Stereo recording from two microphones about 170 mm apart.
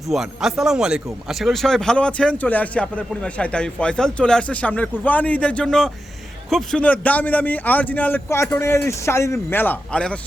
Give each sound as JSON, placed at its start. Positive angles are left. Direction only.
{"t": 0.1, "sound": "a man's voice", "side_deg": 0}